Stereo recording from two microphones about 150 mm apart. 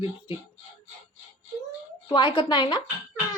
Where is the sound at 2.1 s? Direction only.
30° left (ahead or behind).